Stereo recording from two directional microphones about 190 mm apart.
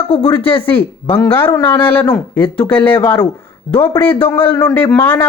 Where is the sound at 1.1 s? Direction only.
10° left (ahead or behind).